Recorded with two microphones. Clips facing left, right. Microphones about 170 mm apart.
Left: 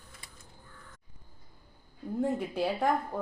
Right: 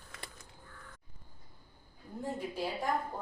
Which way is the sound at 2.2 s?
65° left (ahead or behind).